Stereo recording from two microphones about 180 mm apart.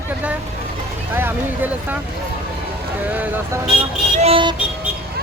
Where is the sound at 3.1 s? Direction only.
10° right (ahead or behind).